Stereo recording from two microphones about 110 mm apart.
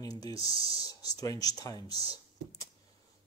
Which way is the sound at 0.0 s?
35° left (ahead or behind).